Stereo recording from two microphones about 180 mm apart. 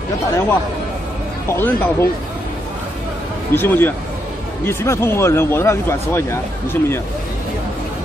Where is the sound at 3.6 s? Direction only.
10° left (ahead or behind).